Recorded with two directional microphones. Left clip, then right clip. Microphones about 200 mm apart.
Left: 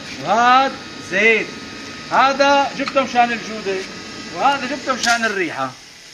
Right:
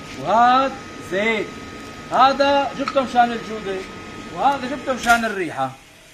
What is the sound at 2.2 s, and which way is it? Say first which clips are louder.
A man's voice: left 1 dB; 5° left (ahead or behind).